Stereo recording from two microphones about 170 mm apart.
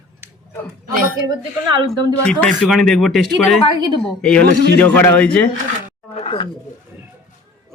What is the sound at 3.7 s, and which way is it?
Speech, 25° right (ahead or behind).